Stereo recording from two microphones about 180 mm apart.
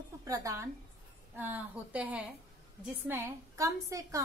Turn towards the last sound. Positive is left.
turn(degrees=-20)  # may be behind; listen again after turning